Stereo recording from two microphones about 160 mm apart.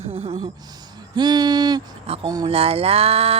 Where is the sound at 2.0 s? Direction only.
35° right (ahead or behind).